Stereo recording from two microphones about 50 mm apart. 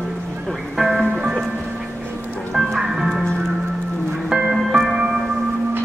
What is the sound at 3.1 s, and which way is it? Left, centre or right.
Music, centre.